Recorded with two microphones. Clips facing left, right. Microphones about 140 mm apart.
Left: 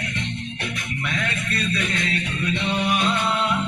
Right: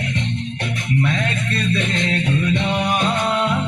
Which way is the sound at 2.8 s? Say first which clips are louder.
Right 2 dB; 40° right (ahead or behind).